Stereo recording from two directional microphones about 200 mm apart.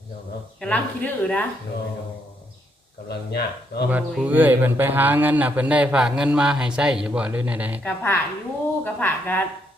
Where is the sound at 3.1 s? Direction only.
55° left (ahead or behind).